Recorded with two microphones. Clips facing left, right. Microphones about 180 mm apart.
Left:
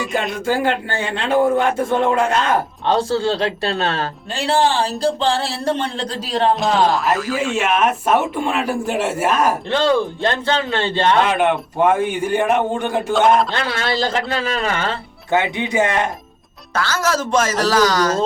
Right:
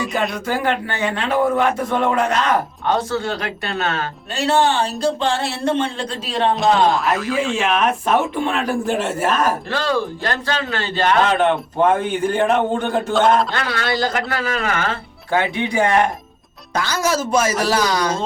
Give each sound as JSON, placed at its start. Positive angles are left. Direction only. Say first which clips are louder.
{"t": 0.2, "sound": "speech", "louder": "left 2 dB", "side_deg": 25}
{"t": 6.6, "sound": "speech", "louder": "right 1 dB", "side_deg": 0}
{"t": 9.6, "sound": "speech", "louder": "left 4 dB", "side_deg": 25}
{"t": 11.3, "sound": "a man's voice", "louder": "even", "side_deg": 10}
{"t": 13.1, "sound": "speech", "louder": "left 1 dB", "side_deg": 0}
{"t": 13.5, "sound": "speech", "louder": "left 1 dB", "side_deg": 25}
{"t": 16.7, "sound": "speech", "louder": "even", "side_deg": -15}